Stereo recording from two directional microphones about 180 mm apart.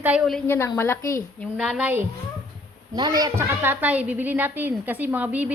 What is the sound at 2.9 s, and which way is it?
A woman's voice, 20° right (ahead or behind).